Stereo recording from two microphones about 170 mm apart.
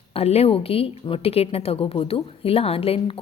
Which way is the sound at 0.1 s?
35° left (ahead or behind).